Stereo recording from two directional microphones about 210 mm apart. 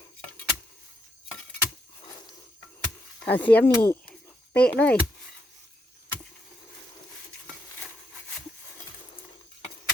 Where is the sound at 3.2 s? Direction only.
10° left (ahead or behind).